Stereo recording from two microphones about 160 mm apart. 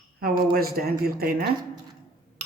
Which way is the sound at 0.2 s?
70° right (ahead or behind).